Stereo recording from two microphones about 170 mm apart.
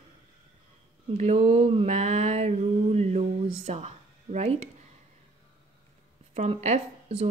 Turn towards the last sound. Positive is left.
turn(degrees=-40)  # may be behind; listen again after turning